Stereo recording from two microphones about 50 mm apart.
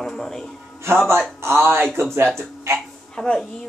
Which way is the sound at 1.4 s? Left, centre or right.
Right.